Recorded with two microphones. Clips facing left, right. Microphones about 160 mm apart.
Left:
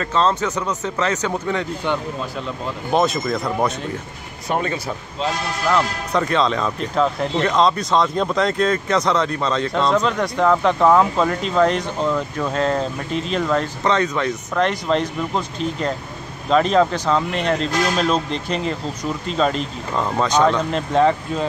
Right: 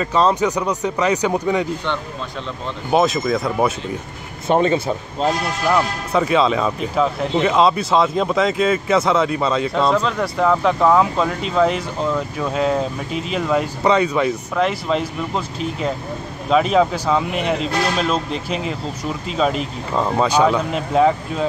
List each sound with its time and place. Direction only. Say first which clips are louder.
0.0 s speech: right 3 dB; 10° right (ahead or behind)
2.9 s speech: right 2 dB; centre (ahead or behind)
4.5 s speech: right 6 dB; 25° right (ahead or behind)
5.7 s speech: right 1 dB; 10° right (ahead or behind)